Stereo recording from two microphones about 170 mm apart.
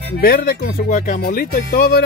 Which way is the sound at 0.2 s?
60° left (ahead or behind).